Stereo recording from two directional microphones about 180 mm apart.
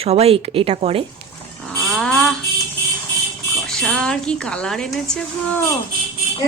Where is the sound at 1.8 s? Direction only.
Centre (ahead or behind).